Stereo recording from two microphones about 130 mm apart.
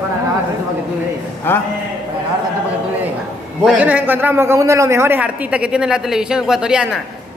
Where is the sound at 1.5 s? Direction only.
15° left (ahead or behind).